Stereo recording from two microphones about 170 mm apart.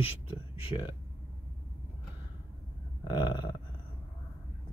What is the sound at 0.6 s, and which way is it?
Speech, 25° left (ahead or behind).